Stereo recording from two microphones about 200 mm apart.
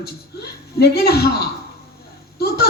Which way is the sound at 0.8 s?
55° left (ahead or behind).